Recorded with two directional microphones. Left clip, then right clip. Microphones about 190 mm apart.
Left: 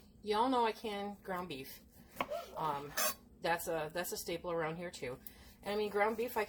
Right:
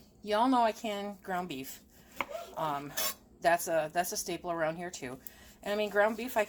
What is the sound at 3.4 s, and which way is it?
A woman's voice, 45° right (ahead or behind).